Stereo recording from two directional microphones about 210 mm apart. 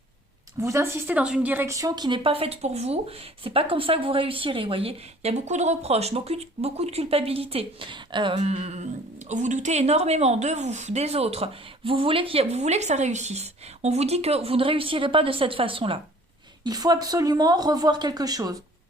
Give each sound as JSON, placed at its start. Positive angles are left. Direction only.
{"t": 0.6, "sound": "a woman's voice", "side_deg": -15}